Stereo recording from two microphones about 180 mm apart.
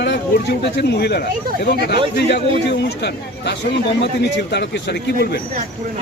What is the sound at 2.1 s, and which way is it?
Speech, 70° left (ahead or behind).